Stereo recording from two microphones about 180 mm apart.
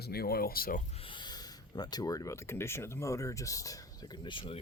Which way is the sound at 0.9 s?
30° left (ahead or behind).